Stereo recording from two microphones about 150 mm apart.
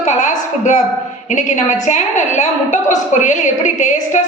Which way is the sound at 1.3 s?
55° left (ahead or behind).